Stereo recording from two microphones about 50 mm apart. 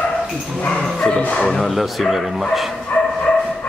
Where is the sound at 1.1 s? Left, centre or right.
Left.